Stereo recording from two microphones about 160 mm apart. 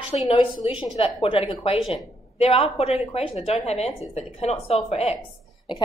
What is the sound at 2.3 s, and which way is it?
A woman's voice, 35° left (ahead or behind).